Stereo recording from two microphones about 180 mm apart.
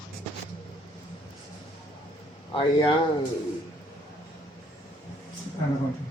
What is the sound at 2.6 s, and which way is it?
Speech, 25° left (ahead or behind).